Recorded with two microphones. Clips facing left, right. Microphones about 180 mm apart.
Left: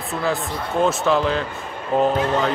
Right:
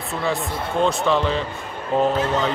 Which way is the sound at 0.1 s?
Centre (ahead or behind).